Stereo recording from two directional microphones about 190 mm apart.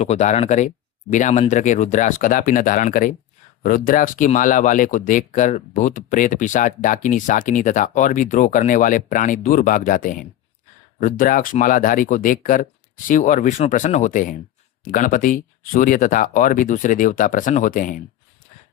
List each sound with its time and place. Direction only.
0.0 s speech: 35° left (ahead or behind)